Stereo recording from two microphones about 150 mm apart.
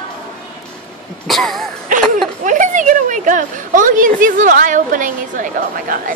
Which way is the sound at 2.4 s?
55° right (ahead or behind).